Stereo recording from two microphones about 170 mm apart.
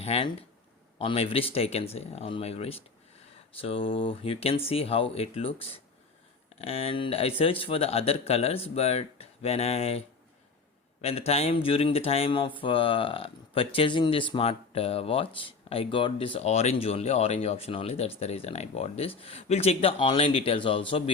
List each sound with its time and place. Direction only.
0.0 s speech: 35° left (ahead or behind)
11.0 s speech: 35° left (ahead or behind)